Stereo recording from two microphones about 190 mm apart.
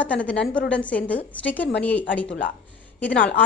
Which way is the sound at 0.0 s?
5° left (ahead or behind).